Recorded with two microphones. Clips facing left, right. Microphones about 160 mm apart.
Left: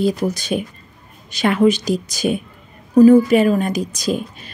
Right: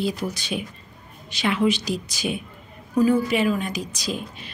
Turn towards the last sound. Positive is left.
turn(degrees=45)  # may be behind; listen again after turning